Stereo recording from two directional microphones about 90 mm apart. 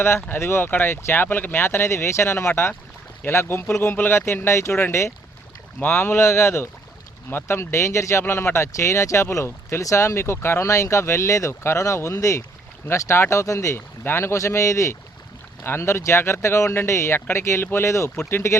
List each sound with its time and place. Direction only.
0.3 s speech: 30° left (ahead or behind)